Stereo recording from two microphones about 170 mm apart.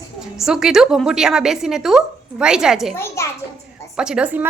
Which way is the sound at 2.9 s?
15° left (ahead or behind).